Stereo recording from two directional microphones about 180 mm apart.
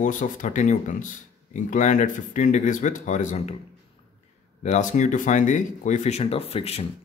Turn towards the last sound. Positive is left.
turn(degrees=35)  # may be behind; listen again after turning